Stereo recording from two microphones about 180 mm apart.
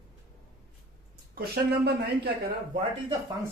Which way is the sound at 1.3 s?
60° right (ahead or behind).